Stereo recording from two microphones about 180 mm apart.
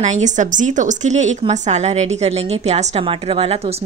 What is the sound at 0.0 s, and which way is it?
A woman's voice, 40° right (ahead or behind).